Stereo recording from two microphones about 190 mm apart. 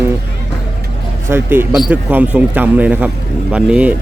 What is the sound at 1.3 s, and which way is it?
Speech, 10° right (ahead or behind).